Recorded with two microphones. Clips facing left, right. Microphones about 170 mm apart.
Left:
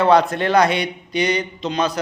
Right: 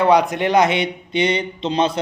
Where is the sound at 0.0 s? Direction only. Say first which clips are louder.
Even; 15° right (ahead or behind).